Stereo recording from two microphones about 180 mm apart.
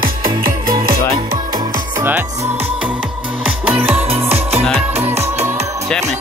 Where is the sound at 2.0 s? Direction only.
10° right (ahead or behind).